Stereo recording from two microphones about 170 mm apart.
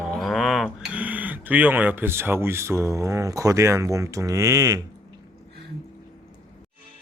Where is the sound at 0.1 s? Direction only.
Centre (ahead or behind).